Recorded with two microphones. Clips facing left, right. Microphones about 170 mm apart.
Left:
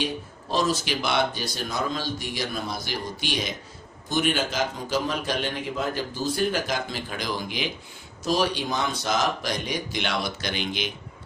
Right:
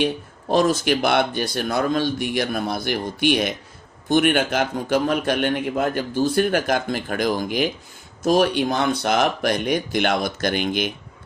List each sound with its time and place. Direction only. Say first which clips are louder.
0.0 s a man's voice: right 7 dB; 55° right (ahead or behind)